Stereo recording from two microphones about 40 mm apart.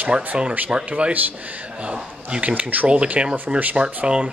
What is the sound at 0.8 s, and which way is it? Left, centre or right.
A man's voice, right.